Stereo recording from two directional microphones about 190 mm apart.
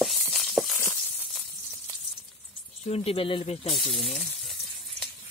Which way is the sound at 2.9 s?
30° left (ahead or behind).